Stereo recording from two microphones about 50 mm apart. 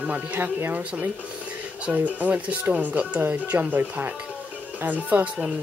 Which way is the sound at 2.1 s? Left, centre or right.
Right.